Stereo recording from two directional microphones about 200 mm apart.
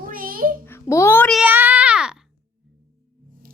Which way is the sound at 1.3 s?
10° right (ahead or behind).